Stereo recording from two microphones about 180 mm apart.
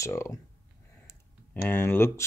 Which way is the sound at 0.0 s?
15° left (ahead or behind).